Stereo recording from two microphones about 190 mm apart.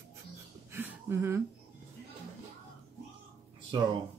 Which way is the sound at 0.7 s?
10° right (ahead or behind).